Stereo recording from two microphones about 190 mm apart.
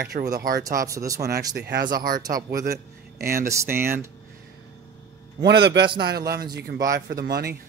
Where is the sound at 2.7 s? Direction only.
50° right (ahead or behind).